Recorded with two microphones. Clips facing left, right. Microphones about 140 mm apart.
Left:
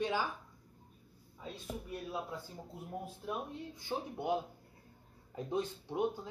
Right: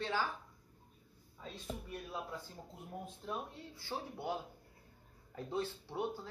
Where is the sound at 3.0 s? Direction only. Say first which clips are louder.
Left 1 dB; 10° left (ahead or behind).